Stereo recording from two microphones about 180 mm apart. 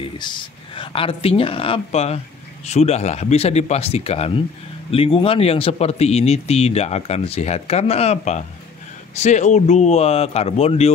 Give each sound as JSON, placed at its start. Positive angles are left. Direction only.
{"t": 0.0, "sound": "speech", "side_deg": 25}